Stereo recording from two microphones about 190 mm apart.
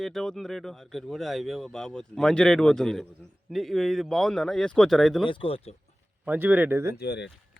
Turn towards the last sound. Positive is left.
turn(degrees=60)  # may be behind; listen again after turning